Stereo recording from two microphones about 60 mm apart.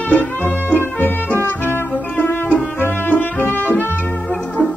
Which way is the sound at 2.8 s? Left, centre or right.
Left.